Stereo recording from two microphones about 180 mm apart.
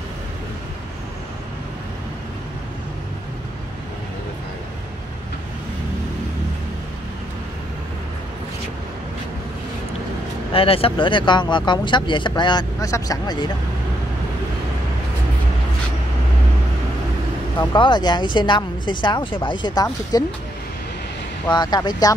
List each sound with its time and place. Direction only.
10.5 s speech: 30° left (ahead or behind)
17.6 s speech: 25° left (ahead or behind)
21.5 s speech: 25° left (ahead or behind)